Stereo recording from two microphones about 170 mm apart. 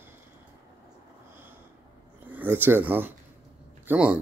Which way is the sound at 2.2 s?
10° right (ahead or behind).